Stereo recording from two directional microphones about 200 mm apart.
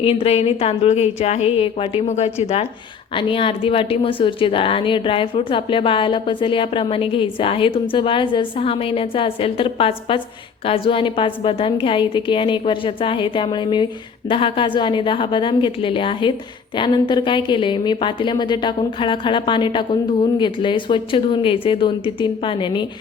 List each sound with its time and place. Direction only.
0.0 s a woman's voice: 30° left (ahead or behind)